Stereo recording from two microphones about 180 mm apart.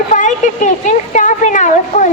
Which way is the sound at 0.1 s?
45° left (ahead or behind).